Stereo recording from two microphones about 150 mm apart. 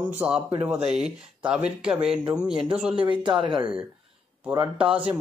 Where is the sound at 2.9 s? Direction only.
30° right (ahead or behind).